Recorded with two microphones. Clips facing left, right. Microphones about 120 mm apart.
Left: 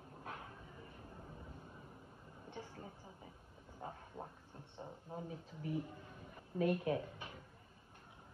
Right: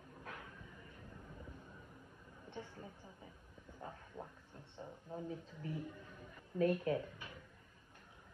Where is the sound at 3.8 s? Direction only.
25° left (ahead or behind).